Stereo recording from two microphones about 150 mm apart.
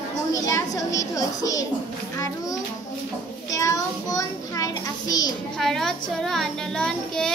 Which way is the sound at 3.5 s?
25° left (ahead or behind).